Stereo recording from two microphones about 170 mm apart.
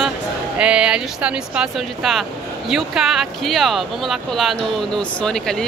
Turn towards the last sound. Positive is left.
turn(degrees=5)  # may be behind; listen again after turning